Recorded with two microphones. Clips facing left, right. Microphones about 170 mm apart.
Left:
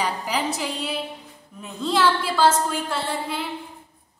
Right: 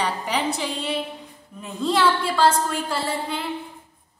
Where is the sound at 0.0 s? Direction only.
5° left (ahead or behind).